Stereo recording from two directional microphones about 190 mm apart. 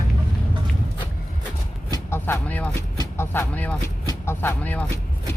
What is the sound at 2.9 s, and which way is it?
Speech, 15° left (ahead or behind).